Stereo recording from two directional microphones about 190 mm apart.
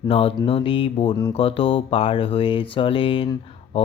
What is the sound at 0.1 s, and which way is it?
Mantra, 30° left (ahead or behind).